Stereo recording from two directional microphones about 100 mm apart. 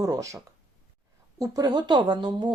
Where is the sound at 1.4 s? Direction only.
40° right (ahead or behind).